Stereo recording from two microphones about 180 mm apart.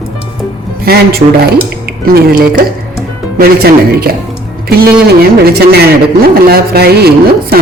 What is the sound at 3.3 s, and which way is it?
Speech, 60° right (ahead or behind).